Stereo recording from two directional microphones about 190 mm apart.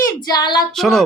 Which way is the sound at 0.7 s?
Centre (ahead or behind).